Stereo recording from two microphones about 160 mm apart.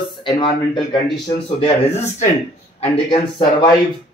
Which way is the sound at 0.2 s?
30° left (ahead or behind).